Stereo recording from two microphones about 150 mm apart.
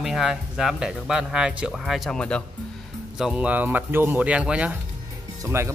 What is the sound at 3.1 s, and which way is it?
Speech, 5° right (ahead or behind).